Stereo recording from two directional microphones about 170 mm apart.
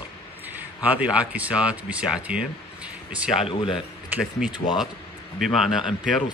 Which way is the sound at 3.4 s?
30° left (ahead or behind).